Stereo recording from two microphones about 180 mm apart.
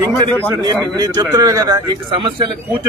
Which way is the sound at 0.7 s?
20° right (ahead or behind).